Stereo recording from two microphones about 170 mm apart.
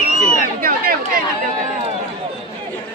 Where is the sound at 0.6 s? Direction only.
55° right (ahead or behind).